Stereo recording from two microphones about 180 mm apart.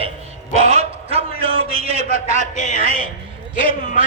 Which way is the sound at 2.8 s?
35° right (ahead or behind).